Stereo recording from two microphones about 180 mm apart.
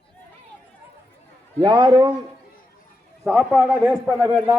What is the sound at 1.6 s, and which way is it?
Speech, 25° right (ahead or behind).